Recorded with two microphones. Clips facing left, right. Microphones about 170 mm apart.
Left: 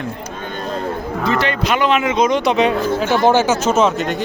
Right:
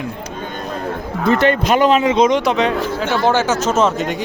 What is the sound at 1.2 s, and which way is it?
Speech, 50° right (ahead or behind).